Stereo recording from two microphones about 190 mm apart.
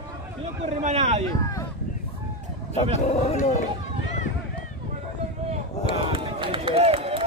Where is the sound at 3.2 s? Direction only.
40° left (ahead or behind).